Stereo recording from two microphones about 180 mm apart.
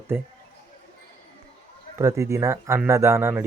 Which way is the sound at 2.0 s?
15° right (ahead or behind).